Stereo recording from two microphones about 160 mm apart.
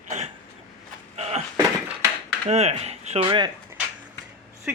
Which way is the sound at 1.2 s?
45° right (ahead or behind).